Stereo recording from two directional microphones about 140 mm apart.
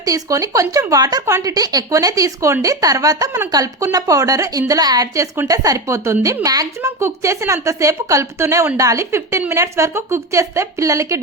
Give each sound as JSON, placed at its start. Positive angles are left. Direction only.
{"t": 0.0, "sound": "speech", "side_deg": -25}